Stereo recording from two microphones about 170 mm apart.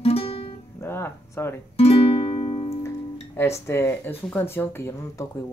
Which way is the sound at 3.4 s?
15° left (ahead or behind).